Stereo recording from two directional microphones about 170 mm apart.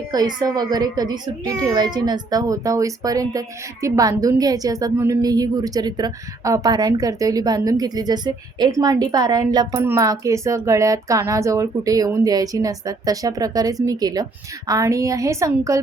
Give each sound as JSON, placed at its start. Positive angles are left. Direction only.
{"t": 0.1, "sound": "a child's voice", "side_deg": -25}